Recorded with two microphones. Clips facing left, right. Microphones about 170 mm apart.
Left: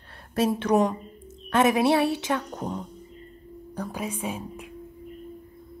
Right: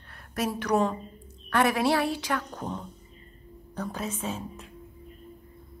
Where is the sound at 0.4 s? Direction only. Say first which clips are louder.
Left 4 dB; 25° left (ahead or behind).